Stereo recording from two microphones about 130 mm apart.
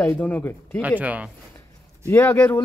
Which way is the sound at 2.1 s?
15° left (ahead or behind).